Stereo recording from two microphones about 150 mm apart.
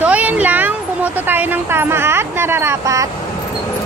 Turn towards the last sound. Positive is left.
turn(degrees=-20)  # may be behind; listen again after turning